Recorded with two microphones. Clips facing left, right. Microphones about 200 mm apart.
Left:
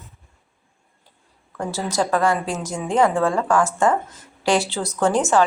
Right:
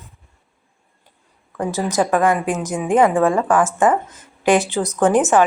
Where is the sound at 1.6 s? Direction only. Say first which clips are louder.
Right 4 dB; 15° right (ahead or behind).